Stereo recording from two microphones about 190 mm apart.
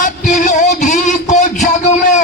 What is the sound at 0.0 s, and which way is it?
Music, 40° left (ahead or behind).